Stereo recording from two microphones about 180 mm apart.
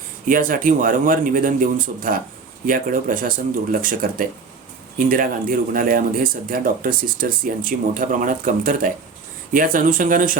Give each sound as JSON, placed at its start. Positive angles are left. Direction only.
{"t": 0.3, "sound": "speech", "side_deg": -50}